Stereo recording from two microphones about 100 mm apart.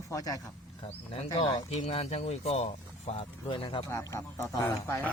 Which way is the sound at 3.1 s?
65° left (ahead or behind).